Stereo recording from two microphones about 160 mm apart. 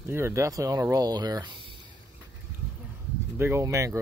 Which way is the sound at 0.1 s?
15° right (ahead or behind).